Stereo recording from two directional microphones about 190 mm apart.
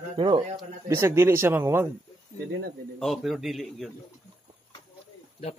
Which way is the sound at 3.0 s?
Centre (ahead or behind).